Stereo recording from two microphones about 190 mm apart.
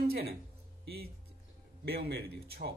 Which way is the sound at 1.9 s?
55° right (ahead or behind).